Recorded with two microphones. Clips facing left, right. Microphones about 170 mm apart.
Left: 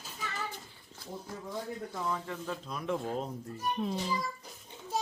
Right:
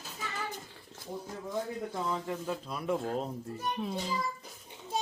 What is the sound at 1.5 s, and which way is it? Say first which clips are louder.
Speech: right 4 dB; 15° right (ahead or behind).